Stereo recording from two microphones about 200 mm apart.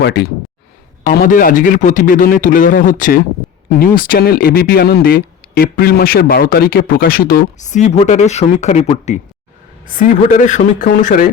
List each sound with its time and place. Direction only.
0.0 s speech: 55° left (ahead or behind)